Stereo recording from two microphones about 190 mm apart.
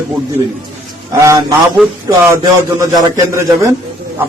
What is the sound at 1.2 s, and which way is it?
Speech, 15° right (ahead or behind).